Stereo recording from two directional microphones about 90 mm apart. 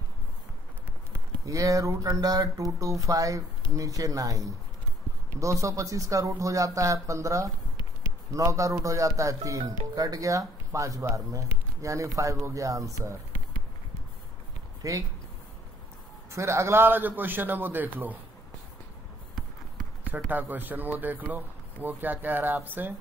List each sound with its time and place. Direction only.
1.1 s speech: 40° right (ahead or behind)
14.8 s speech: 40° right (ahead or behind)
16.3 s speech: 30° right (ahead or behind)
20.2 s speech: 20° right (ahead or behind)